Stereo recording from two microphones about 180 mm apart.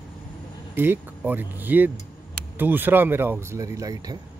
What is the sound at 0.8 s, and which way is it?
Speech, 10° right (ahead or behind).